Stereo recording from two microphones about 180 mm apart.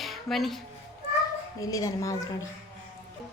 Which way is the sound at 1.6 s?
20° left (ahead or behind).